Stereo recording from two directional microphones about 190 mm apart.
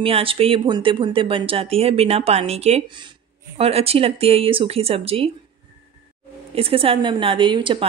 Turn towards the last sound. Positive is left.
turn(degrees=-25)  # may be behind; listen again after turning